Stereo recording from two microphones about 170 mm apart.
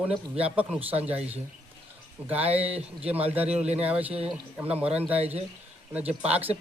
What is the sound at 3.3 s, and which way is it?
Speech, 10° right (ahead or behind).